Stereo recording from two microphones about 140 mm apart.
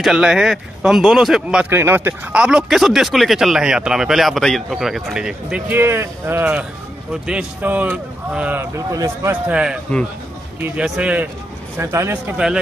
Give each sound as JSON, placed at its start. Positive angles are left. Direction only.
{"t": 0.0, "sound": "a man's voice", "side_deg": -5}
{"t": 9.5, "sound": "speech", "side_deg": -5}
{"t": 11.8, "sound": "a man's voice", "side_deg": -20}
{"t": 12.4, "sound": "speech", "side_deg": -5}